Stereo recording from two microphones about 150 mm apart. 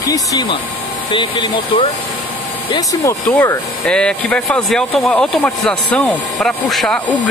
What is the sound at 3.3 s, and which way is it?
Speech, 15° left (ahead or behind).